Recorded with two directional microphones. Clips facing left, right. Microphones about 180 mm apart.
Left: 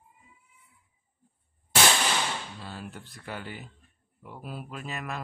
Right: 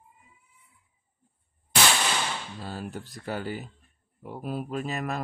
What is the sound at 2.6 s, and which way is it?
Speech, 40° right (ahead or behind).